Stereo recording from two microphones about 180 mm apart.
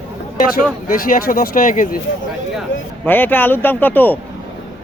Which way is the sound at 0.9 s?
50° left (ahead or behind).